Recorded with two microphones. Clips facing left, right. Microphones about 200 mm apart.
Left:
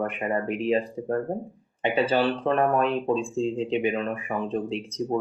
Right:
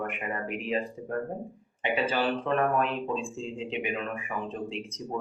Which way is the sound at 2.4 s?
35° left (ahead or behind).